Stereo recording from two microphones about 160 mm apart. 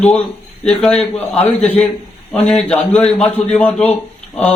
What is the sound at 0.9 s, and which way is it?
Speech, 40° left (ahead or behind).